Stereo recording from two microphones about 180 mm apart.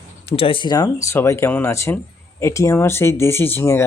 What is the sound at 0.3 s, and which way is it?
Speech, 30° left (ahead or behind).